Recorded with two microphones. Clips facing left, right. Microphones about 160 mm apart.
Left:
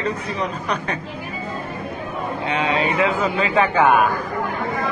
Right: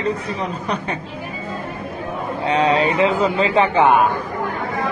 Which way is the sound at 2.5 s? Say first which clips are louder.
Right 5 dB; 35° right (ahead or behind).